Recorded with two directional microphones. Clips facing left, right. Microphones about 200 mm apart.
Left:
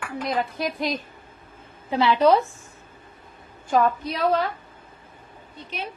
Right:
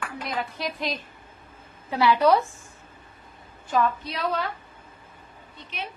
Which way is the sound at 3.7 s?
45° left (ahead or behind).